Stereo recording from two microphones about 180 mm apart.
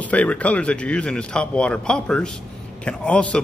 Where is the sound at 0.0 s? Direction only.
10° left (ahead or behind).